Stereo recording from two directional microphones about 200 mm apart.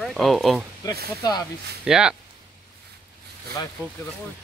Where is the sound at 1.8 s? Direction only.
5° right (ahead or behind).